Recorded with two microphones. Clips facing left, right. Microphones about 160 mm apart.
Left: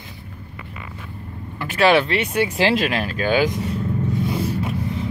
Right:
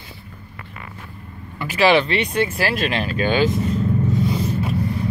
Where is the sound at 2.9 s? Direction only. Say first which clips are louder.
Even; centre (ahead or behind).